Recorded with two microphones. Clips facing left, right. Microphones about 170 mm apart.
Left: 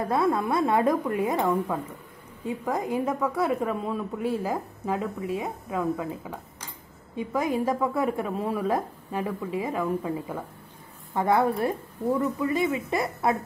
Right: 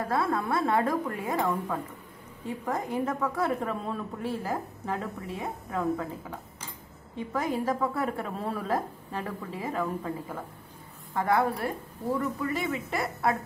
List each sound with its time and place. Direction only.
0.1 s a woman's voice: 20° left (ahead or behind)
7.2 s a woman's voice: 15° left (ahead or behind)
11.1 s speech: 20° left (ahead or behind)